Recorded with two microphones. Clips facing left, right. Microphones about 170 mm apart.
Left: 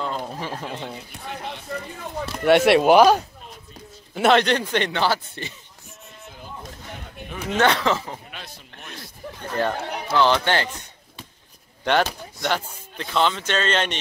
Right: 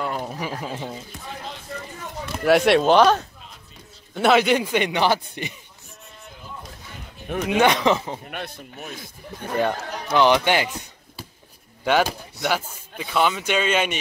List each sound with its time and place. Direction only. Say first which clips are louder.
0.0 s speech: right 1 dB; 10° right (ahead or behind)
2.3 s speech: left 1 dB; centre (ahead or behind)
4.1 s speech: even; centre (ahead or behind); by 5.5 s 15° right (ahead or behind)
7.4 s speech: right 2 dB; 10° right (ahead or behind)
8.3 s speech: right 7 dB; 55° right (ahead or behind)
8.7 s speech: right 4 dB; centre (ahead or behind)
11.8 s speech: right 1 dB; 5° right (ahead or behind)